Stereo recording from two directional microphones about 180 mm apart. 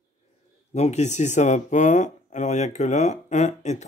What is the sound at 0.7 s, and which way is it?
Speech, 40° left (ahead or behind).